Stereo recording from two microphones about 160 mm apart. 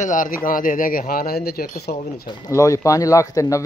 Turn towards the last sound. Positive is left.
turn(degrees=20)  # may be behind; listen again after turning